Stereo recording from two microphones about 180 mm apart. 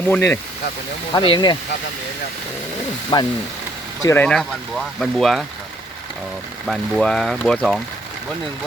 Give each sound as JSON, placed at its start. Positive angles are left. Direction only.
{"t": 0.1, "sound": "speech", "side_deg": 10}
{"t": 1.1, "sound": "speech", "side_deg": 25}
{"t": 3.1, "sound": "speech", "side_deg": 25}
{"t": 4.0, "sound": "speech", "side_deg": 10}
{"t": 6.7, "sound": "speech", "side_deg": 0}